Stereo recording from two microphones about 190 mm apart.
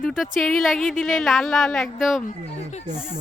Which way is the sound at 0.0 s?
Centre (ahead or behind).